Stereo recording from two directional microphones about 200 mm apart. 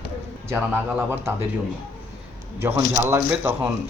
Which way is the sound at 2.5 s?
10° right (ahead or behind).